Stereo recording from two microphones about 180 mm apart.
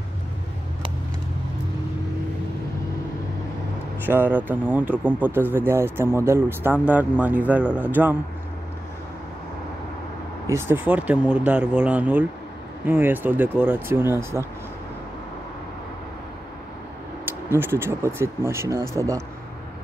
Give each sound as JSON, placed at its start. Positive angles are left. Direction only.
{"t": 4.0, "sound": "speech", "side_deg": -10}
{"t": 10.5, "sound": "speech", "side_deg": -10}
{"t": 17.2, "sound": "speech", "side_deg": -10}